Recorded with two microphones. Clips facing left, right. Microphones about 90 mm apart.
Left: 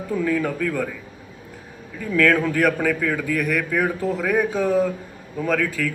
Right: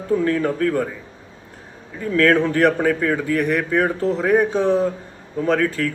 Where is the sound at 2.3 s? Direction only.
30° right (ahead or behind).